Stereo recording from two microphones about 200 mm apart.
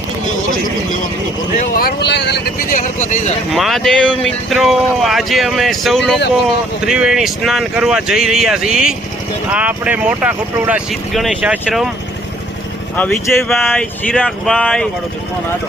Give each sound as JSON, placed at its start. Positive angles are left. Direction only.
{"t": 1.5, "sound": "speech", "side_deg": 50}
{"t": 3.5, "sound": "speech", "side_deg": 0}
{"t": 13.0, "sound": "speech", "side_deg": 5}